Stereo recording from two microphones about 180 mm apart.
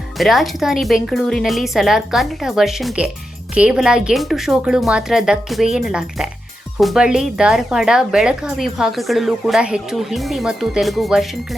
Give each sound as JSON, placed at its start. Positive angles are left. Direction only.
{"t": 0.2, "sound": "speech", "side_deg": 0}